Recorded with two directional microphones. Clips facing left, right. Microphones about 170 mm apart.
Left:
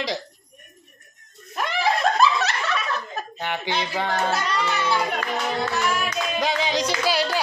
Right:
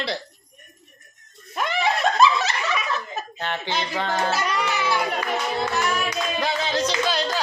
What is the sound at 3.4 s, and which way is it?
Speech, 10° left (ahead or behind).